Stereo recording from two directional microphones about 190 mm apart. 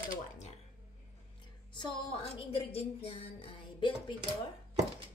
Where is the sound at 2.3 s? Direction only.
30° left (ahead or behind).